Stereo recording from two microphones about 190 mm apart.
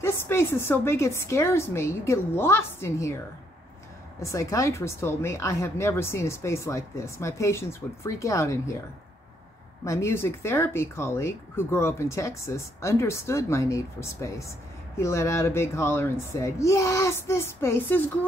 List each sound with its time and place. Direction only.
0.0 s speech: 15° left (ahead or behind)
4.2 s speech: 15° left (ahead or behind)
9.8 s speech: 15° left (ahead or behind)